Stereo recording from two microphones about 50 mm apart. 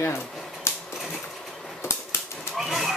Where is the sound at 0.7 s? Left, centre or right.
Left.